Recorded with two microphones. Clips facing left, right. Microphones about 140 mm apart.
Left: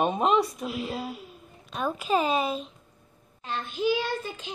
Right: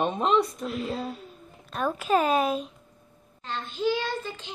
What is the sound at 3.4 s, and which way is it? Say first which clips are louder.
A woman's voice: even; 15° left (ahead or behind).